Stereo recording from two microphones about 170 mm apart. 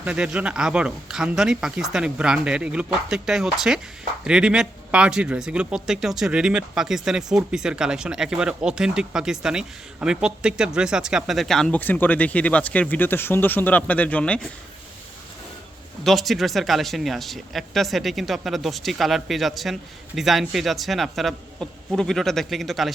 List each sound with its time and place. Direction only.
0.0 s a man's voice: 5° right (ahead or behind)
16.0 s a man's voice: centre (ahead or behind)